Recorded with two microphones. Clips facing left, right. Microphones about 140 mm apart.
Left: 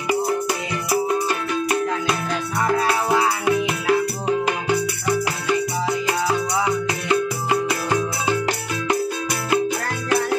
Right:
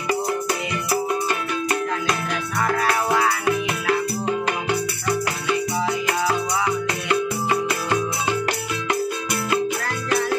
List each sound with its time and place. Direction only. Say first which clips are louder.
2.6 s music: left 1 dB; 20° left (ahead or behind)
7.1 s music: left 1 dB; 15° left (ahead or behind)